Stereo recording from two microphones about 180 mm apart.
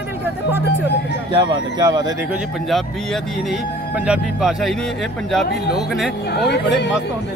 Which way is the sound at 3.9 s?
5° right (ahead or behind).